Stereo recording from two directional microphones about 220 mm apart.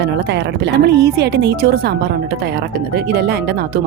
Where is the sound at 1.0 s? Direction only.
50° right (ahead or behind).